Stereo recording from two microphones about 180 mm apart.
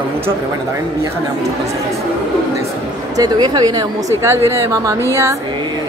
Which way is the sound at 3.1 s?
20° right (ahead or behind).